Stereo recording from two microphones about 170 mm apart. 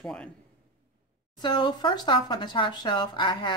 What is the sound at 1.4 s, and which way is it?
Speech, 25° left (ahead or behind).